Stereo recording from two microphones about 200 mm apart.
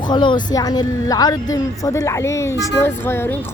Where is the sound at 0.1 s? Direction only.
20° left (ahead or behind).